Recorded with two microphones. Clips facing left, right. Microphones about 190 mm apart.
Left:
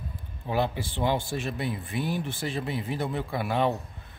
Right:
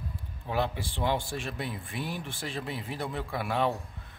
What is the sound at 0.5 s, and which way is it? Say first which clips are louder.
Speech: left 3 dB; centre (ahead or behind).